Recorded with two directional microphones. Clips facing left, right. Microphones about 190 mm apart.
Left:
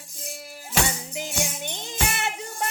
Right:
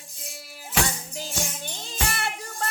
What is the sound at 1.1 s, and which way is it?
Music, 20° left (ahead or behind).